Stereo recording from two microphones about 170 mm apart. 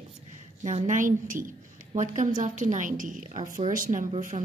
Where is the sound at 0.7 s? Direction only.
45° right (ahead or behind).